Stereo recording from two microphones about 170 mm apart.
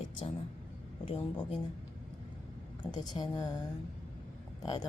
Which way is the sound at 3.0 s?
25° left (ahead or behind).